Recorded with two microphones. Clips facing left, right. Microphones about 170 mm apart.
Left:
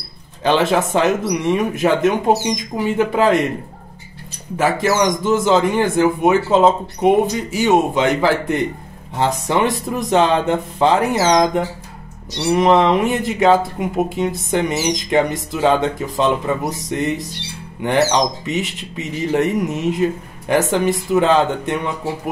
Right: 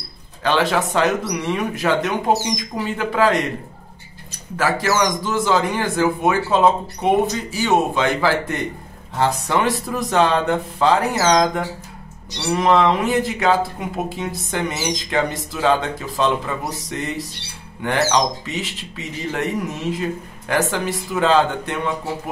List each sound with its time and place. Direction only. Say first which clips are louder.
0.4 s speech: left 3 dB; 20° left (ahead or behind)
4.6 s speech: left 3 dB; 20° left (ahead or behind)